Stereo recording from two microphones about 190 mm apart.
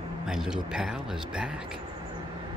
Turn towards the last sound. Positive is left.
turn(degrees=-5)  # may be behind; listen again after turning